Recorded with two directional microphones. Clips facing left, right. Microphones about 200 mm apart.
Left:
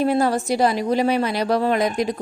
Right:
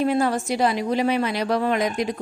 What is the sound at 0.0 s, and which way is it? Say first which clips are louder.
A woman's voice: left 2 dB; 40° left (ahead or behind).